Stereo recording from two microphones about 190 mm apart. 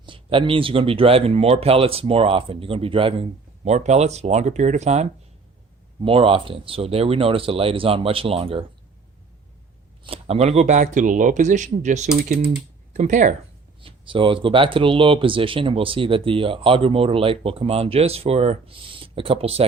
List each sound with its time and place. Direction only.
0.0 s speech: 25° right (ahead or behind)
10.0 s speech: 30° right (ahead or behind)
13.8 s speech: 25° right (ahead or behind)